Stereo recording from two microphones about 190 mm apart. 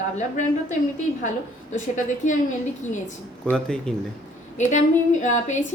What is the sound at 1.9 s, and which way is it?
Speech, 40° left (ahead or behind).